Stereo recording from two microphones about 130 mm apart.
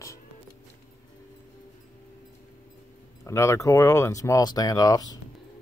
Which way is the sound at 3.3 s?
20° left (ahead or behind).